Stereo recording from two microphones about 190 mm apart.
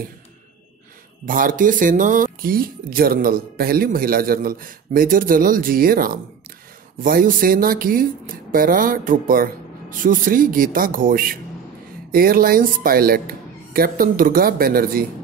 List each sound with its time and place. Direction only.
1.2 s speech: 45° right (ahead or behind)